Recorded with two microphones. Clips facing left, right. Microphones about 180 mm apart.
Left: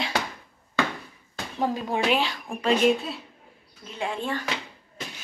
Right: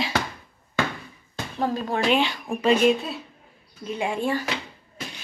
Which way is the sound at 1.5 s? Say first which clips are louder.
Right 1 dB; 5° left (ahead or behind).